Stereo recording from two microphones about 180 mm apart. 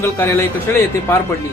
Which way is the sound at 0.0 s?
15° left (ahead or behind).